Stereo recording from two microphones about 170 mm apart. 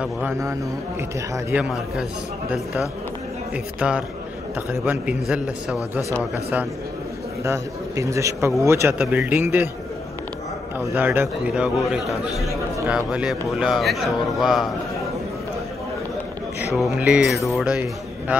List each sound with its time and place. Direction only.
0.0 s a man's voice: 10° right (ahead or behind)
7.4 s a man's voice: 15° right (ahead or behind)
11.0 s a man's voice: 10° right (ahead or behind)
12.8 s speech: 5° right (ahead or behind)
16.7 s a man's voice: 5° right (ahead or behind)